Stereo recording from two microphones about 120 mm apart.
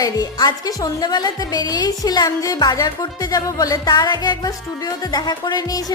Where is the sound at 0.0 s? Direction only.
30° left (ahead or behind).